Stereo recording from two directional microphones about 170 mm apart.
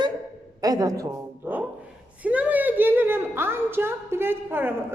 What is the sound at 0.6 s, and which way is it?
A woman's voice, 20° right (ahead or behind).